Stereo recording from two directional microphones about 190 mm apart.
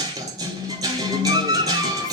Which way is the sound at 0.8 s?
20° right (ahead or behind).